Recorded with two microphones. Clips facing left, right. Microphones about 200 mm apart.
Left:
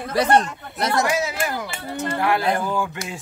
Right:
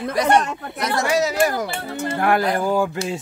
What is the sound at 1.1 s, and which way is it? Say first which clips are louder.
Speech: right 5 dB; 40° right (ahead or behind).